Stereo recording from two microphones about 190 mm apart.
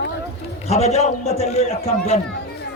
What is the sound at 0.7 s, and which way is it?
A man's voice, 35° left (ahead or behind).